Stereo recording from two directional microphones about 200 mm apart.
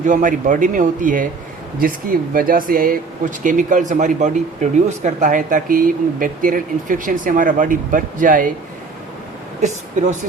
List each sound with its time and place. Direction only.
0.0 s speech: 40° right (ahead or behind)
9.6 s speech: 35° right (ahead or behind)